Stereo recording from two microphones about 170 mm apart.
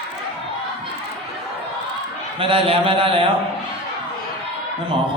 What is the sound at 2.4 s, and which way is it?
Speech, 35° right (ahead or behind).